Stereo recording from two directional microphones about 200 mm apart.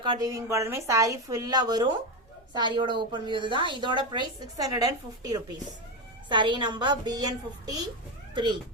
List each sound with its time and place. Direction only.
0.0 s a woman's voice: 20° right (ahead or behind)